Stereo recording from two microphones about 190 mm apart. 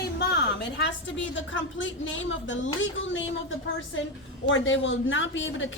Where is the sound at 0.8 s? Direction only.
75° left (ahead or behind).